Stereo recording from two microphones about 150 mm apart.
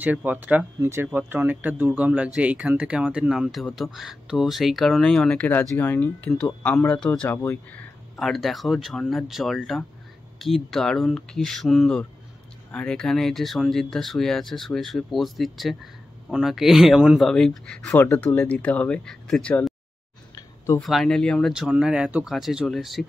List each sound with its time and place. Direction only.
0.0 s speech: 10° right (ahead or behind)
17.8 s speech: 20° left (ahead or behind); by 19.7 s 5° left (ahead or behind)
20.3 s a sound: 20° left (ahead or behind)
20.8 s speech: centre (ahead or behind)